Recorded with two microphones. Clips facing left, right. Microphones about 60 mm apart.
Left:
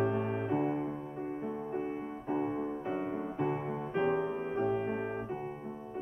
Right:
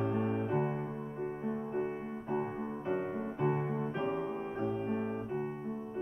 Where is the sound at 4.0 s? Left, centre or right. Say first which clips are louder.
Left 4 dB; left.